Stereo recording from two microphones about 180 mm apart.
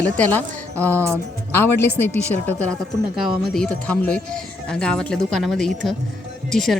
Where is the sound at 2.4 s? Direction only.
5° left (ahead or behind).